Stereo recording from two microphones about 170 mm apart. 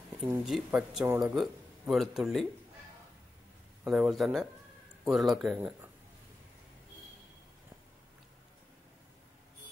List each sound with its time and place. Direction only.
0.5 s speech: 5° right (ahead or behind)
3.8 s speech: centre (ahead or behind)
5.6 s speech: 10° right (ahead or behind)